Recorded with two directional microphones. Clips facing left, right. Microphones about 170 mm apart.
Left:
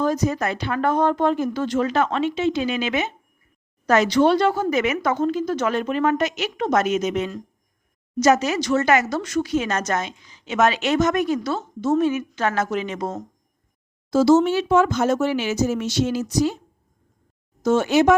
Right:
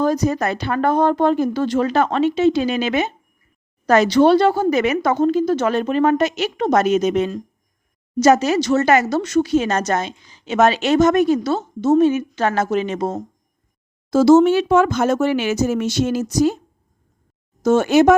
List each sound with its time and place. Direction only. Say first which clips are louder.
0.0 s speech: right 3 dB; 35° right (ahead or behind)
14.1 s speech: right 4 dB; 50° right (ahead or behind)
17.6 s speech: right 4 dB; 50° right (ahead or behind)